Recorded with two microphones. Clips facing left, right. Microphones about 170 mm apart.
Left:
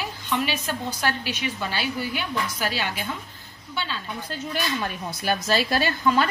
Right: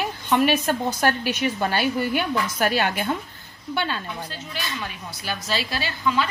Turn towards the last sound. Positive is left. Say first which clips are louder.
# left 3 dB
turn(degrees=50)  # may be behind; listen again after turning